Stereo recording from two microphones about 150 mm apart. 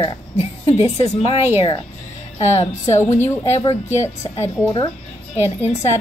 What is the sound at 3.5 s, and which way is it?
Speech, 45° left (ahead or behind).